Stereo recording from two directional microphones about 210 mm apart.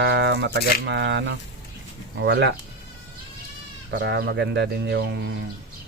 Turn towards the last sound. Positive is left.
turn(degrees=-55)  # may be behind; listen again after turning